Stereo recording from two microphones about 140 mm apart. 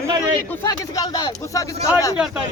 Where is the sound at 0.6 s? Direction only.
25° left (ahead or behind).